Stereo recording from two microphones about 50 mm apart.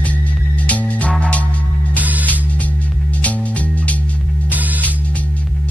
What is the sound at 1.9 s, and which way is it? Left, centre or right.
Music, right.